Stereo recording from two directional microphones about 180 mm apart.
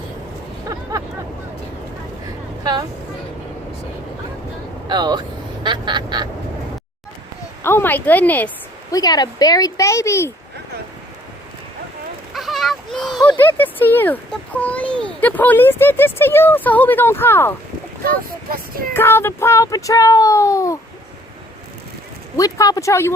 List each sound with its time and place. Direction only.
0.7 s a sound: 20° right (ahead or behind)
4.9 s quack: 25° right (ahead or behind)
7.6 s speech: 10° left (ahead or behind)
8.9 s speech: 20° left (ahead or behind)
12.3 s a sound: centre (ahead or behind)
13.4 s speech: 10° left (ahead or behind)
18.4 s child singing: 55° right (ahead or behind)
18.9 s speech: 10° left (ahead or behind)
22.4 s speech: 20° left (ahead or behind)